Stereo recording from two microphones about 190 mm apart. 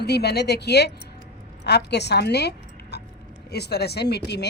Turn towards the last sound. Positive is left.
turn(degrees=60)  # may be behind; listen again after turning